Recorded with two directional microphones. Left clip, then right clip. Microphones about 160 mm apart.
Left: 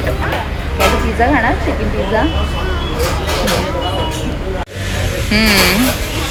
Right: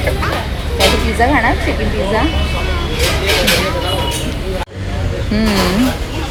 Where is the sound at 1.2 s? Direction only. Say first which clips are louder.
Even; 15° right (ahead or behind).